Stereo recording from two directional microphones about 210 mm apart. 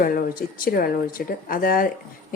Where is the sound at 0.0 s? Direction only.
45° left (ahead or behind).